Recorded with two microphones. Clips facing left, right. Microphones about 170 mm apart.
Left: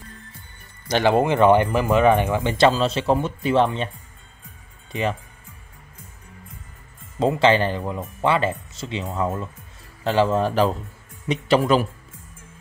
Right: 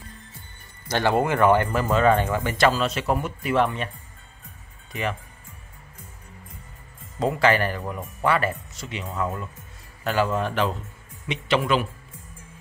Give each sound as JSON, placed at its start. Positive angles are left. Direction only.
{"t": 0.8, "sound": "speech", "side_deg": 20}
{"t": 7.2, "sound": "speech", "side_deg": 25}